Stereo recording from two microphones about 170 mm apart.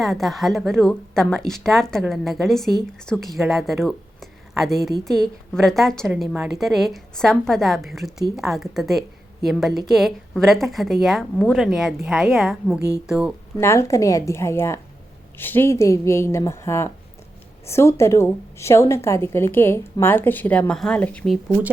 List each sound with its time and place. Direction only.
0.0 s a woman's voice: centre (ahead or behind)
13.6 s a woman's voice: 15° left (ahead or behind)